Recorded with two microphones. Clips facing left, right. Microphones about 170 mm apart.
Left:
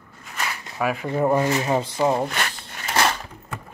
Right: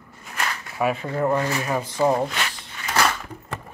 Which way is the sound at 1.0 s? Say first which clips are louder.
Left 2 dB; 15° left (ahead or behind).